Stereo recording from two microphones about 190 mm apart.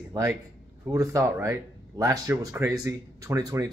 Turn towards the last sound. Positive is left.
turn(degrees=-20)  # may be behind; listen again after turning